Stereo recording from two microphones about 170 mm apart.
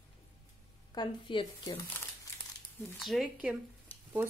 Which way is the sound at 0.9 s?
25° left (ahead or behind).